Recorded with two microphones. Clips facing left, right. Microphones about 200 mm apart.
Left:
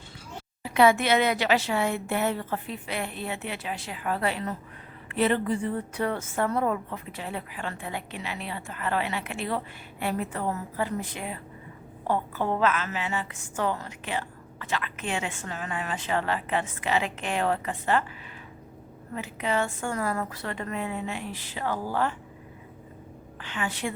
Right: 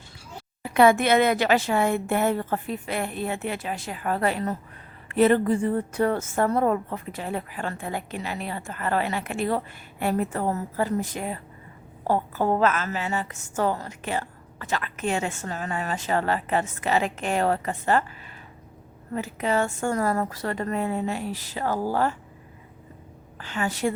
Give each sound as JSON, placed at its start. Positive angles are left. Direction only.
{"t": 0.6, "sound": "a woman's voice", "side_deg": -50}
{"t": 19.1, "sound": "a woman's voice", "side_deg": -40}
{"t": 23.4, "sound": "a woman's voice", "side_deg": -40}